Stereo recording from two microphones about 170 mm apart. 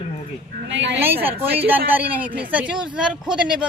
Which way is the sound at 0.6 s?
90° right.